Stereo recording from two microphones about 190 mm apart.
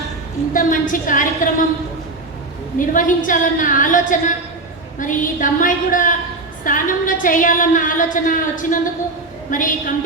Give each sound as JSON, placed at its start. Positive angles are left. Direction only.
{"t": 0.5, "sound": "a woman's voice", "side_deg": 45}
{"t": 2.7, "sound": "a woman's voice", "side_deg": 45}